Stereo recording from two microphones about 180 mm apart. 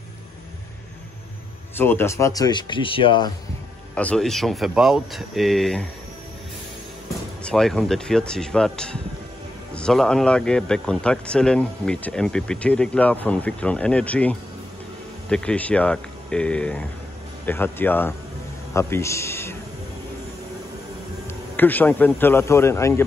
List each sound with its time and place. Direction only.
1.8 s speech: 10° left (ahead or behind)
3.9 s speech: 5° left (ahead or behind)
7.4 s a man's voice: 5° left (ahead or behind)
21.5 s a man's voice: 10° left (ahead or behind)